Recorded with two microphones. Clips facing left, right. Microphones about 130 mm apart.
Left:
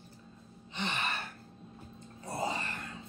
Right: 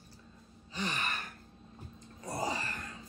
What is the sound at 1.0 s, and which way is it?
Gasp, 30° left (ahead or behind).